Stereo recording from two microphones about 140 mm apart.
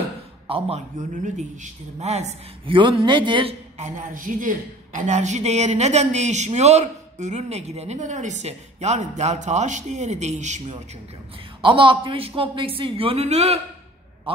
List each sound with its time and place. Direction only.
0.5 s a man's voice: 45° right (ahead or behind)
2.7 s a man's voice: 35° right (ahead or behind)
3.7 s a woman's voice: 65° right (ahead or behind)
11.6 s a man's voice: 40° right (ahead or behind)